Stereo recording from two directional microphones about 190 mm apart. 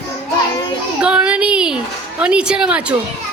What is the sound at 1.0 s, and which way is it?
A woman's voice, 5° right (ahead or behind).